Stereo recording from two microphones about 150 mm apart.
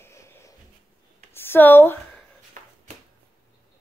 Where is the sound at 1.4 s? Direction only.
15° left (ahead or behind).